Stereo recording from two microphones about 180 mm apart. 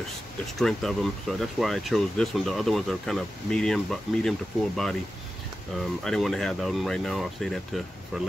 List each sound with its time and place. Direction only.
0.6 s speech: centre (ahead or behind)
6.0 s speech: centre (ahead or behind)